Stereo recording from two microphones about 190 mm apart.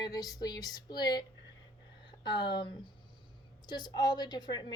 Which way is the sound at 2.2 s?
25° left (ahead or behind).